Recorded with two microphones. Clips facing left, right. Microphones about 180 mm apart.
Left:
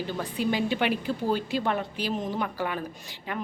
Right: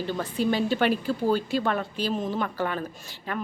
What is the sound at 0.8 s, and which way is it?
A woman's voice, 15° left (ahead or behind).